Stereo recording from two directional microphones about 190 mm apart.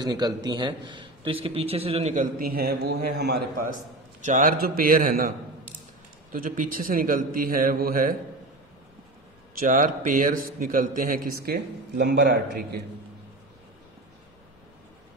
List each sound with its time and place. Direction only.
0.0 s a man's voice: 20° right (ahead or behind); by 3.7 s 55° right (ahead or behind)
4.2 s a man's voice: 40° right (ahead or behind)
6.3 s a man's voice: 45° right (ahead or behind)
9.6 s a man's voice: 45° right (ahead or behind); by 12.8 s 60° right (ahead or behind)